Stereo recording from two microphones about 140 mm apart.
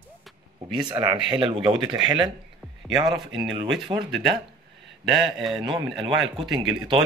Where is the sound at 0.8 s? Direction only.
30° right (ahead or behind).